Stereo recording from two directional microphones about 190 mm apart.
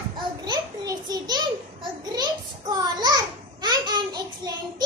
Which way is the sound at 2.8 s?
20° right (ahead or behind).